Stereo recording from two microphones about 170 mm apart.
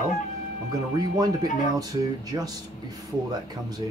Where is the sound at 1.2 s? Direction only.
20° right (ahead or behind).